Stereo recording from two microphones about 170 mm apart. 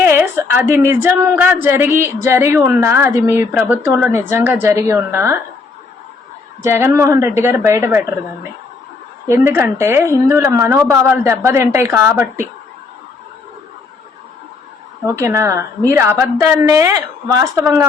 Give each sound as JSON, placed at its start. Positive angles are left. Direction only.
{"t": 0.0, "sound": "a woman's voice", "side_deg": -15}
{"t": 6.6, "sound": "a woman's voice", "side_deg": -15}
{"t": 9.2, "sound": "a woman's voice", "side_deg": -15}
{"t": 15.0, "sound": "a woman's voice", "side_deg": -15}